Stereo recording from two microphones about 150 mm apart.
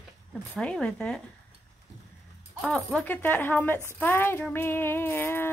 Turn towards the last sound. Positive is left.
turn(degrees=15)  # may be behind; listen again after turning